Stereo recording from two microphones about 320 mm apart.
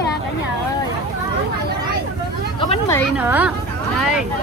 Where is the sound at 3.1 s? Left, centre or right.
Centre.